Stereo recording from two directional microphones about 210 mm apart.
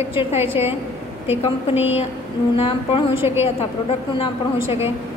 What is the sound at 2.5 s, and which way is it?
Speech, 25° left (ahead or behind).